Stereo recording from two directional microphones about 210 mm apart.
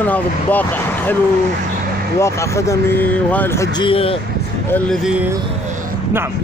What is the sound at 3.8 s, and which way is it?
Speech, 25° left (ahead or behind).